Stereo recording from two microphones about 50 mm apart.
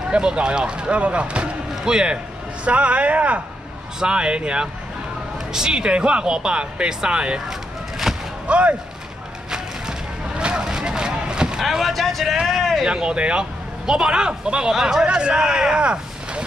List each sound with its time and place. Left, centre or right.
0.1 s a man's voice: centre
4.0 s speech: centre
8.1 s artillery fire: centre
8.5 s speech: right
9.5 s vehicle: centre
11.6 s a sound: centre
12.4 s vehicle: centre
12.8 s a man's voice: centre
15.0 s speech: right